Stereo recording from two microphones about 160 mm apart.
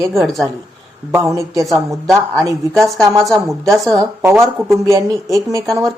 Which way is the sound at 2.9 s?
Centre (ahead or behind).